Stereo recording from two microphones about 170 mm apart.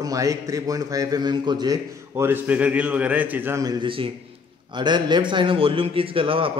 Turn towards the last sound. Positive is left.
turn(degrees=-30)  # may be behind; listen again after turning